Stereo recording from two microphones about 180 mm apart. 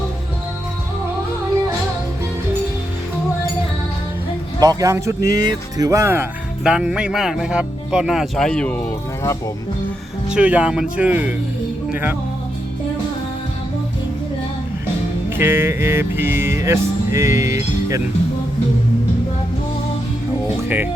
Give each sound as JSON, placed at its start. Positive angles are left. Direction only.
{"t": 4.6, "sound": "music", "side_deg": -20}
{"t": 6.7, "sound": "speech", "side_deg": -5}
{"t": 10.2, "sound": "music", "side_deg": -5}
{"t": 15.4, "sound": "music", "side_deg": -10}